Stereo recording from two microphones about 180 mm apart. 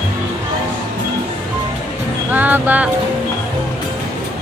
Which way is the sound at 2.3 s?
10° right (ahead or behind).